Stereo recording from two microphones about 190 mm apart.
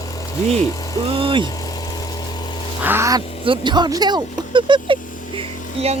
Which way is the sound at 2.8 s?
15° right (ahead or behind).